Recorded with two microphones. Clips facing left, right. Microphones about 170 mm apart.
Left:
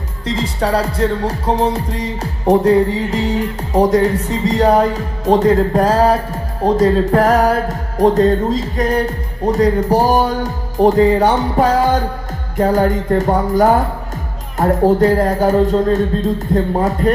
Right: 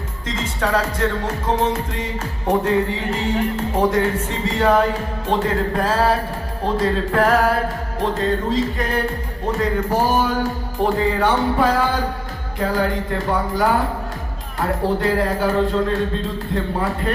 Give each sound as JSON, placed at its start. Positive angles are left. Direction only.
{"t": 0.3, "sound": "speech", "side_deg": 35}